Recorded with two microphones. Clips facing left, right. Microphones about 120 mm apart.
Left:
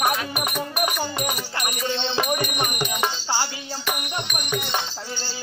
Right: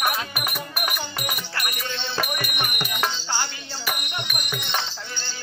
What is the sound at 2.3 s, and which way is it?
Music, 35° left (ahead or behind).